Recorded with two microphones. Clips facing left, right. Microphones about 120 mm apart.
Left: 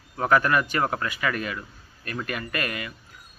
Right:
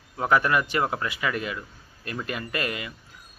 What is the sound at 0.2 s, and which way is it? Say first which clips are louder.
A man's voice: left 1 dB; 20° right (ahead or behind).